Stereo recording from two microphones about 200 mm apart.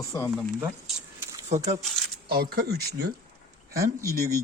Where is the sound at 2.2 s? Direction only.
50° right (ahead or behind).